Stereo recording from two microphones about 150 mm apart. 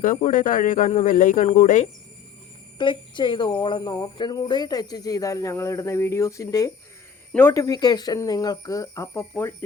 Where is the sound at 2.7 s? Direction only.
30° left (ahead or behind); by 7.6 s 15° left (ahead or behind).